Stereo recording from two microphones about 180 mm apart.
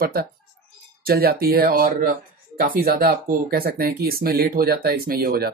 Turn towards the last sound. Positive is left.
turn(degrees=-55)  # may be behind; listen again after turning